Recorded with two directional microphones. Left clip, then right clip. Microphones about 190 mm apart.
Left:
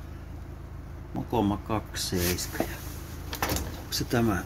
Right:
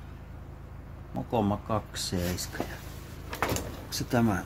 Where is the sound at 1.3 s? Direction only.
15° right (ahead or behind).